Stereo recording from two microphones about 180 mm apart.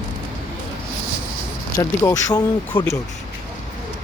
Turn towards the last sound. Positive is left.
turn(degrees=20)  # may be behind; listen again after turning